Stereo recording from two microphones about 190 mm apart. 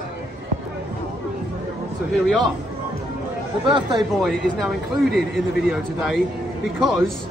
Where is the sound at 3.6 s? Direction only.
25° right (ahead or behind).